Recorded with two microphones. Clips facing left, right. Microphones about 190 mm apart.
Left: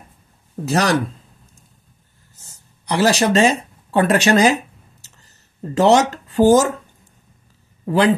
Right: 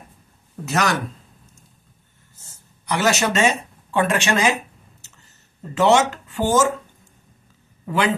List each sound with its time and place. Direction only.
0.7 s speech: 35° left (ahead or behind)
2.8 s speech: 35° left (ahead or behind)
5.6 s speech: 40° left (ahead or behind)
7.8 s speech: 35° left (ahead or behind)